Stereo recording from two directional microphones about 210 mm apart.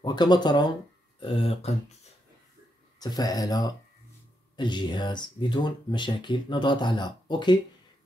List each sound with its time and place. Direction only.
0.0 s speech: 20° left (ahead or behind)
3.0 s speech: 20° left (ahead or behind)